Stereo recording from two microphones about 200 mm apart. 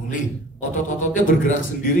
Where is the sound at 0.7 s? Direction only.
40° left (ahead or behind).